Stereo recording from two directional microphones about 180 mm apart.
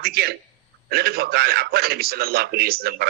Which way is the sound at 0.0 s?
60° right (ahead or behind).